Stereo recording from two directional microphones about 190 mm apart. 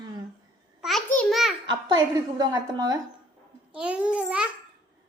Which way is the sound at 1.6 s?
20° right (ahead or behind).